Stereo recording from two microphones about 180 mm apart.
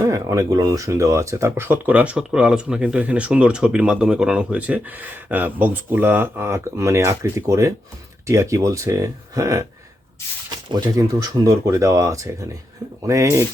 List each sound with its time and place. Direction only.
0.0 s speech: 20° right (ahead or behind)
10.7 s speech: 20° right (ahead or behind)